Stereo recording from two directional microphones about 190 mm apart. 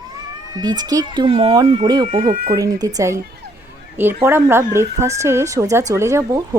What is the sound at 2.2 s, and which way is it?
Speech, 45° right (ahead or behind).